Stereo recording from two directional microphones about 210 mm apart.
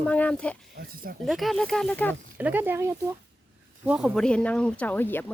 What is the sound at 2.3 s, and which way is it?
Speech, 10° right (ahead or behind).